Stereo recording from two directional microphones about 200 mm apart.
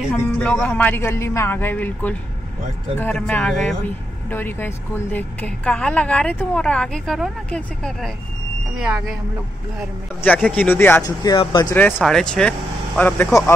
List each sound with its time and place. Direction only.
0.1 s a man's voice: 5° left (ahead or behind)
10.2 s a man's voice: 5° left (ahead or behind); by 11.7 s 20° left (ahead or behind)
11.7 s speech: 5° left (ahead or behind)